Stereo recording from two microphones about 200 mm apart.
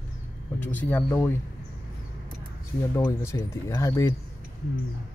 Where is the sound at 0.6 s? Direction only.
10° left (ahead or behind).